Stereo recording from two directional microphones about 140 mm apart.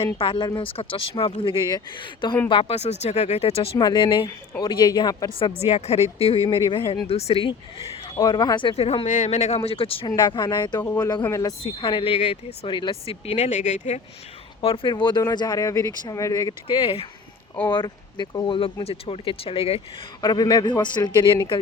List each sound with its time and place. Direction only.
0.2 s speech: 40° left (ahead or behind)
5.4 s speech: 40° left (ahead or behind)
8.0 s speech: 25° left (ahead or behind); by 9.0 s 45° left (ahead or behind)
9.0 s speech: 60° left (ahead or behind)
9.6 s speech: 40° left (ahead or behind); by 11.5 s 25° left (ahead or behind)
11.6 s speech: 40° left (ahead or behind); by 14.0 s 55° left (ahead or behind)
14.6 s speech: 40° left (ahead or behind); by 16.6 s 25° left (ahead or behind)
16.6 s speech: 40° left (ahead or behind)
20.2 s speech: 30° left (ahead or behind)